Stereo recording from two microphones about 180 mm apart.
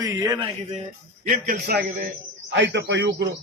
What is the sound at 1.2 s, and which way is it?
Speech, 50° right (ahead or behind).